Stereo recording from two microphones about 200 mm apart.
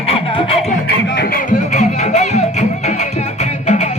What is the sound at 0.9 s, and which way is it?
Music, 60° left (ahead or behind).